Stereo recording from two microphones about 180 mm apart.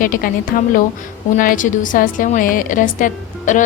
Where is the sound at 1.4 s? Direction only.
50° left (ahead or behind).